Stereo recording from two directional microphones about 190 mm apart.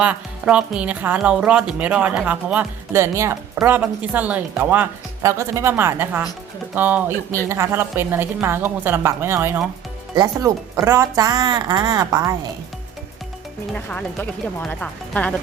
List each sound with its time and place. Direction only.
0.0 s speech: 5° right (ahead or behind)
13.7 s speech: 5° left (ahead or behind)